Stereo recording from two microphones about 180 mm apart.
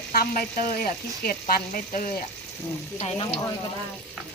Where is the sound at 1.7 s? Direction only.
50° left (ahead or behind).